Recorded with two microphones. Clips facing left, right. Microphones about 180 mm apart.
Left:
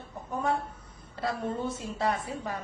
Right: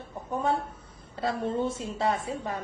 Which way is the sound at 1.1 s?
25° right (ahead or behind).